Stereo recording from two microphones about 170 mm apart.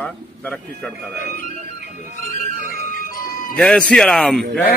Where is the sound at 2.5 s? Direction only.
55° right (ahead or behind).